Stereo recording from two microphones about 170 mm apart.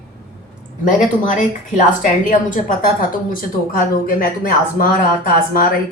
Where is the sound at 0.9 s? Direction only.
50° left (ahead or behind).